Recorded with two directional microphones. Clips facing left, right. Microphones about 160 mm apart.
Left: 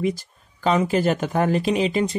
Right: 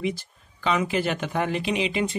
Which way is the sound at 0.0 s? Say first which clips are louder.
Left 4 dB; 40° left (ahead or behind).